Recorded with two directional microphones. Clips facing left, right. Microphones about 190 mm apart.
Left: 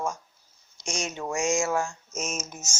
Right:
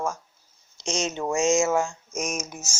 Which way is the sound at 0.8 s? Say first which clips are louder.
Right 5 dB; 20° right (ahead or behind).